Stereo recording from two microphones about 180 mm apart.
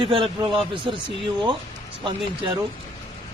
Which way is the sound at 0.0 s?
30° right (ahead or behind).